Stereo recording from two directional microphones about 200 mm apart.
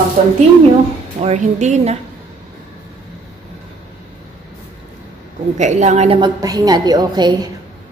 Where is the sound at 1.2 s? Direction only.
35° right (ahead or behind).